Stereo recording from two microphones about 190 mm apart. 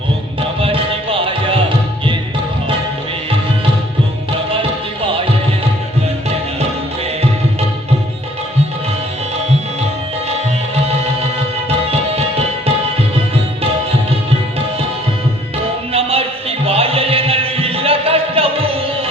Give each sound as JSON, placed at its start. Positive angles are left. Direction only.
{"t": 0.6, "sound": "music", "side_deg": -30}
{"t": 15.9, "sound": "music", "side_deg": -30}